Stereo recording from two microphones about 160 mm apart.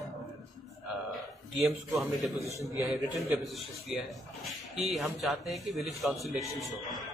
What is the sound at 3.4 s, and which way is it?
Speech, centre (ahead or behind).